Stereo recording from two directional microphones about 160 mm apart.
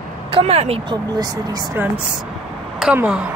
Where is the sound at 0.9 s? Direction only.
25° right (ahead or behind).